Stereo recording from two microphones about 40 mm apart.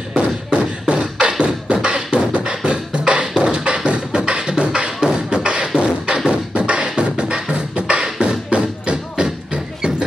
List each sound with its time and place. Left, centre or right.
0.1 s beatboxing: right
8.5 s music: right